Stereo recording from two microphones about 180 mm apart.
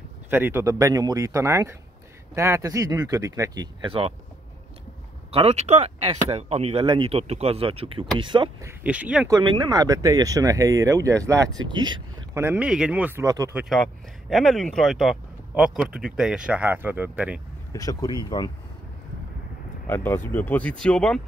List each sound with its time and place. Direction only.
0.3 s speech: 10° right (ahead or behind); by 4.1 s 30° right (ahead or behind)
5.3 s speech: 35° right (ahead or behind)
8.6 s speech: 10° right (ahead or behind)
9.3 s speech: 25° right (ahead or behind)
12.4 s speech: 5° right (ahead or behind)
13.6 s speech: centre (ahead or behind)
17.7 s speech: 20° left (ahead or behind)
19.9 s speech: 10° left (ahead or behind)